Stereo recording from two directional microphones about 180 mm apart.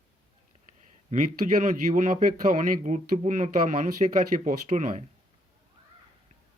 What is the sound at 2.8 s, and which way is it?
Speech, 40° right (ahead or behind).